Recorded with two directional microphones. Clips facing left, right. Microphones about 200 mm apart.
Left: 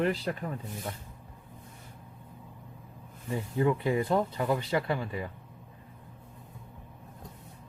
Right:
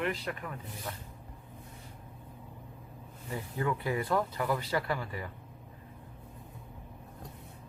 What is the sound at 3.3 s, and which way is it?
Speech, 20° left (ahead or behind).